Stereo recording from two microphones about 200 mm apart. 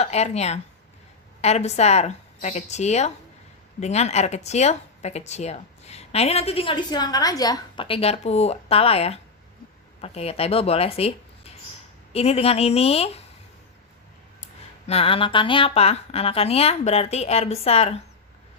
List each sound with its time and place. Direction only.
0.0 s speech: 35° left (ahead or behind)
14.8 s a woman's voice: 30° left (ahead or behind)